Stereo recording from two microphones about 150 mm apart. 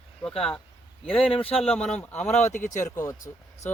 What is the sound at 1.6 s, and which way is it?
Speech, 5° left (ahead or behind).